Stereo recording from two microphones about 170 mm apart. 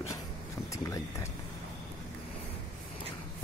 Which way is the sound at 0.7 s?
20° left (ahead or behind).